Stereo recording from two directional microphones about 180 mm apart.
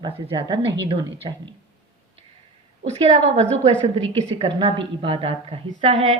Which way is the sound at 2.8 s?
35° right (ahead or behind).